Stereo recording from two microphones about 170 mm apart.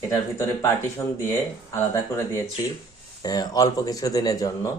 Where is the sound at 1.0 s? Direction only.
15° left (ahead or behind).